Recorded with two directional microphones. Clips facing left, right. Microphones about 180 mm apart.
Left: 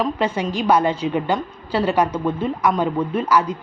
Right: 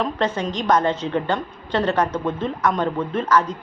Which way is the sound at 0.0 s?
10° left (ahead or behind).